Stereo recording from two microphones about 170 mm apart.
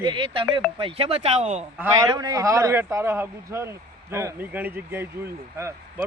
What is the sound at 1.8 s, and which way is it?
A man's voice, 15° right (ahead or behind).